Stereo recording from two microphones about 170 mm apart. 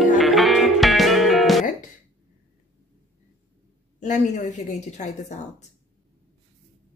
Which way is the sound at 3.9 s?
45° left (ahead or behind).